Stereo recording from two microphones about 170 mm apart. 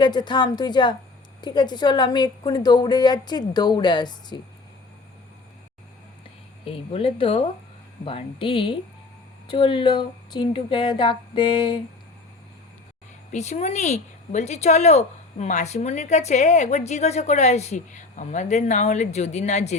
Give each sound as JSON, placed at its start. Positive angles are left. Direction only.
{"t": 0.0, "sound": "a woman's voice", "side_deg": 25}
{"t": 6.7, "sound": "a woman's voice", "side_deg": 35}
{"t": 13.3, "sound": "speech", "side_deg": 45}